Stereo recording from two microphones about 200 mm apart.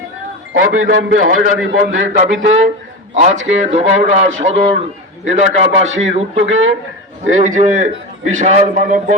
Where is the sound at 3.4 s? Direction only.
35° right (ahead or behind).